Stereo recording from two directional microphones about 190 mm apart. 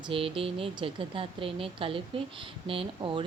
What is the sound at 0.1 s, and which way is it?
A woman's voice, 30° right (ahead or behind).